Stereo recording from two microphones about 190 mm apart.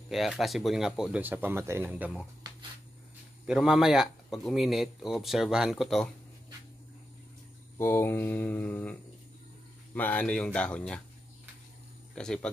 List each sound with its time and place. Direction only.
0.1 s a man's voice: centre (ahead or behind)
3.4 s a man's voice: 5° right (ahead or behind)
7.7 s speech: 10° left (ahead or behind)
9.9 s a man's voice: 10° left (ahead or behind)
12.2 s a man's voice: 5° left (ahead or behind)